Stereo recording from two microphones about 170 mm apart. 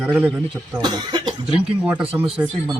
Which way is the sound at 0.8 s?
25° right (ahead or behind).